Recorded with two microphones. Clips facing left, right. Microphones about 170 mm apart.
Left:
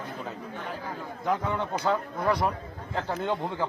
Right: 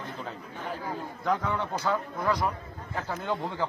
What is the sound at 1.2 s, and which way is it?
Speech, 15° left (ahead or behind).